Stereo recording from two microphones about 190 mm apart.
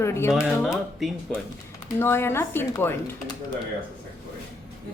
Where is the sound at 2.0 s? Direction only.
10° left (ahead or behind).